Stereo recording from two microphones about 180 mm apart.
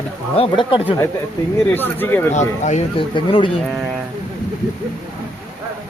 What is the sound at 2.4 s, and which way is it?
Speech, 40° left (ahead or behind).